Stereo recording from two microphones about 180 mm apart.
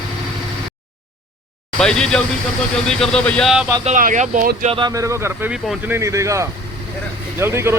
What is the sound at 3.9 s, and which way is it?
Speech, 45° right (ahead or behind).